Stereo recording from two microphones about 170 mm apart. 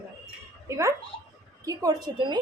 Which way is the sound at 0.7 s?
15° right (ahead or behind).